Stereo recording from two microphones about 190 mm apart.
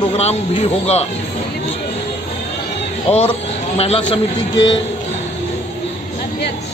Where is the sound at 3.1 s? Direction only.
30° left (ahead or behind).